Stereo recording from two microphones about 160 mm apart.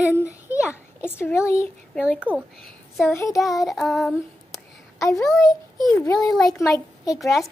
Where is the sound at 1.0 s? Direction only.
15° left (ahead or behind).